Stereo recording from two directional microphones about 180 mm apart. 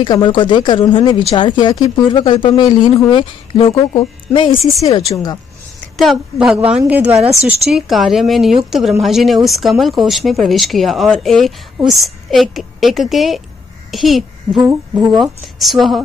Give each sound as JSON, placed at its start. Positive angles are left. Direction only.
{"t": 0.0, "sound": "speech", "side_deg": 25}
{"t": 5.9, "sound": "a child's voice", "side_deg": 0}